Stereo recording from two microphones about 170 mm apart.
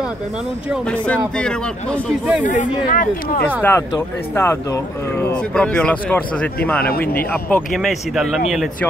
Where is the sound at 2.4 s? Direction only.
50° left (ahead or behind).